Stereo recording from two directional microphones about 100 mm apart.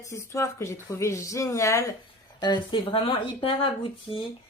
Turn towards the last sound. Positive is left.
turn(degrees=65)  # may be behind; listen again after turning